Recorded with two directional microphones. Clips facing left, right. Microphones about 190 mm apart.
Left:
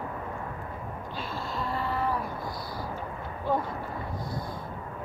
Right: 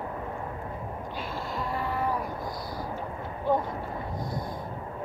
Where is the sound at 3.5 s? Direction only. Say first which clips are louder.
Right 2 dB; 15° right (ahead or behind).